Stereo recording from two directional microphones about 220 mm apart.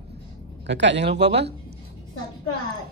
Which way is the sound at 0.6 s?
55° right (ahead or behind).